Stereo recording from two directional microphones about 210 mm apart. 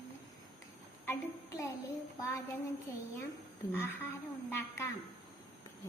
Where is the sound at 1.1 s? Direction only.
15° left (ahead or behind).